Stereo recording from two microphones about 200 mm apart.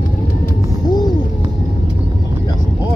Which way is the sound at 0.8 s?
20° left (ahead or behind).